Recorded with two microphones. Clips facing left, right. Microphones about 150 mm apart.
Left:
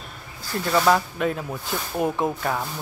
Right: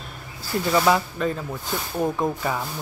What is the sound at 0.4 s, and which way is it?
Speech, 5° right (ahead or behind).